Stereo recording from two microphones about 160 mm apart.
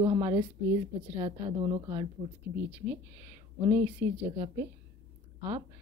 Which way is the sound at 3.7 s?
15° right (ahead or behind).